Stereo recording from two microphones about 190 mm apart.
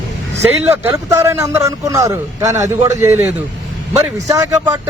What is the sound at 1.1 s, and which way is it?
Speech, 15° right (ahead or behind).